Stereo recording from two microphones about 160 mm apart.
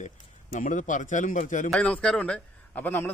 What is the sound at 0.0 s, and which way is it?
Speech, 55° left (ahead or behind).